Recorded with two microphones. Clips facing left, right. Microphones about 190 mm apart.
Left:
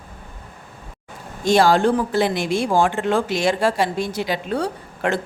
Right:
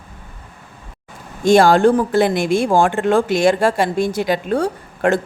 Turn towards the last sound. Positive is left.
turn(degrees=-45)  # may be behind; listen again after turning